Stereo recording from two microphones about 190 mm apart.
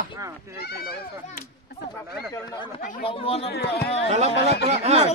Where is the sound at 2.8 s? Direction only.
45° left (ahead or behind).